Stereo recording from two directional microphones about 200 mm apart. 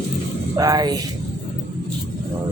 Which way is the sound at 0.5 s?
20° right (ahead or behind).